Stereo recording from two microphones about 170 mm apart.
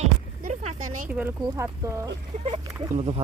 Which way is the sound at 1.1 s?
10° right (ahead or behind).